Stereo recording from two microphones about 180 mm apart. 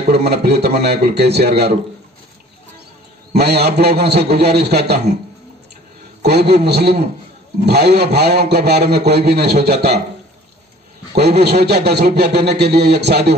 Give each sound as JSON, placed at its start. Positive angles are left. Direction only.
{"t": 0.1, "sound": "a man's voice", "side_deg": -65}
{"t": 3.3, "sound": "a man's voice", "side_deg": -65}
{"t": 6.2, "sound": "a man's voice", "side_deg": -65}
{"t": 11.1, "sound": "a man's voice", "side_deg": -65}